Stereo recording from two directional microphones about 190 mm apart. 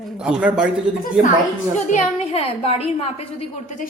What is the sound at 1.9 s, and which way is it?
Speech, 30° left (ahead or behind).